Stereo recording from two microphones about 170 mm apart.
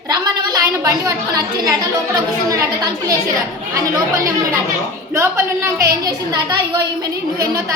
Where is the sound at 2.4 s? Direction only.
20° right (ahead or behind).